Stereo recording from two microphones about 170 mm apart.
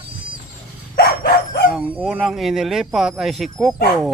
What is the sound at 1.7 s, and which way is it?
Speech, centre (ahead or behind).